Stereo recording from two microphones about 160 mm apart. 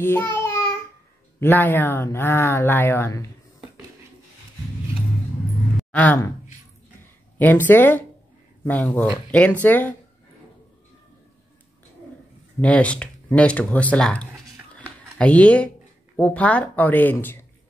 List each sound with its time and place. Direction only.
0.0 s speech: 15° left (ahead or behind)
0.4 s child singing: 15° left (ahead or behind)
1.4 s speech: 15° left (ahead or behind)
5.8 s speech: 10° left (ahead or behind)
7.3 s speech: 10° left (ahead or behind)
12.6 s speech: 10° left (ahead or behind)